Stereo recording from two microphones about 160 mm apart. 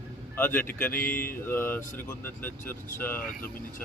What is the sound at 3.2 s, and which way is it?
Speech, 60° left (ahead or behind).